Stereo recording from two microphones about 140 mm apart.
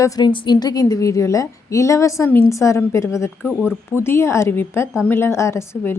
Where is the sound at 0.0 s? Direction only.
35° left (ahead or behind).